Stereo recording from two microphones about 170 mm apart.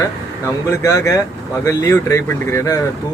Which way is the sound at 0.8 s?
20° left (ahead or behind).